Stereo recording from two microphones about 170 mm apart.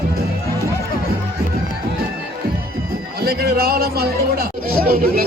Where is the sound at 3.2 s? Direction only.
65° right (ahead or behind).